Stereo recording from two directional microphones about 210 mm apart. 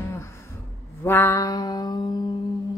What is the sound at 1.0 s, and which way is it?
Mantra, 10° left (ahead or behind).